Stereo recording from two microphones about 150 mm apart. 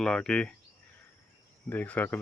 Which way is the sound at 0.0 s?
5° left (ahead or behind).